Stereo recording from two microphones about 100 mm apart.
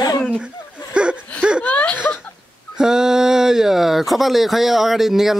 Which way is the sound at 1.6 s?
15° left (ahead or behind).